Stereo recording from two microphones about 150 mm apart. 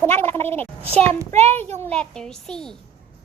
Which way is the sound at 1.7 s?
5° left (ahead or behind).